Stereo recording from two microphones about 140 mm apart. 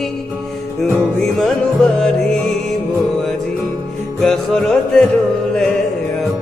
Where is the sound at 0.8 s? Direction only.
5° left (ahead or behind).